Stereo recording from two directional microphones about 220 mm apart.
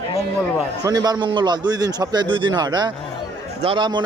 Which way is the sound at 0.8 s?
15° right (ahead or behind).